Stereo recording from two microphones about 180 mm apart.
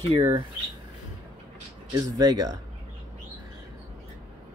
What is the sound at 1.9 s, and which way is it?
Speech, 20° right (ahead or behind).